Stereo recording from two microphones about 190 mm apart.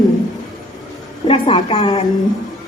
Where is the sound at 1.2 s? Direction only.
30° left (ahead or behind).